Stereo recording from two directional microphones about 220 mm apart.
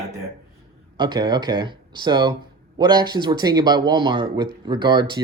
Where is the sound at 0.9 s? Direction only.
20° right (ahead or behind).